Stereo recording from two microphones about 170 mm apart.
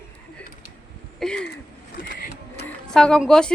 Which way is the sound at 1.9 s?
55° left (ahead or behind).